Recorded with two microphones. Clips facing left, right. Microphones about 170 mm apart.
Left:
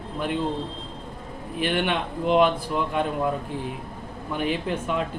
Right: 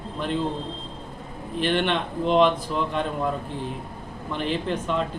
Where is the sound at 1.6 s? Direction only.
5° left (ahead or behind).